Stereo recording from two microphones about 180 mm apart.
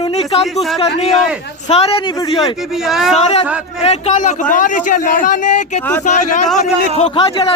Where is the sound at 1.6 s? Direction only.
35° left (ahead or behind).